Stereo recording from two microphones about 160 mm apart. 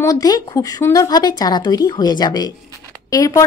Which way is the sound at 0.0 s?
20° left (ahead or behind).